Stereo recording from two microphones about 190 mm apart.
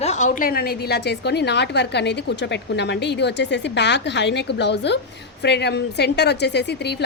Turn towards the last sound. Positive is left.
turn(degrees=60)  # may be behind; listen again after turning